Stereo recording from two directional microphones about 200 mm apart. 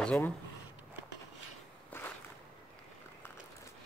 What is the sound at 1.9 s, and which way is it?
Walk, 10° left (ahead or behind).